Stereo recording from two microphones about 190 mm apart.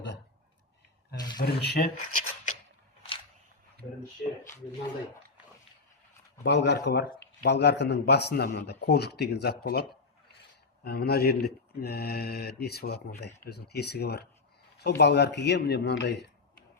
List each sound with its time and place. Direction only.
1.4 s speech: 55° left (ahead or behind)
4.2 s speech: 50° left (ahead or behind)
6.4 s speech: 65° left (ahead or behind)
10.8 s speech: 55° left (ahead or behind)